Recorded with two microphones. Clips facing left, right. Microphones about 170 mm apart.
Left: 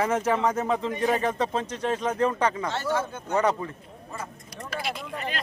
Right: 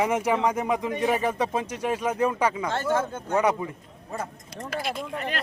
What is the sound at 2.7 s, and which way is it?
Speech, 50° right (ahead or behind).